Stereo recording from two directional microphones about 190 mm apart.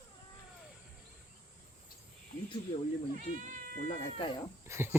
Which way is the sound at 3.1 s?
40° right (ahead or behind).